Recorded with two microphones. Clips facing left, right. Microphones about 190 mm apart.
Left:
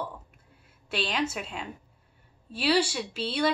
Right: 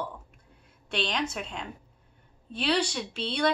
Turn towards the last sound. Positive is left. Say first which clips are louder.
# even
turn(degrees=5)  # may be behind; listen again after turning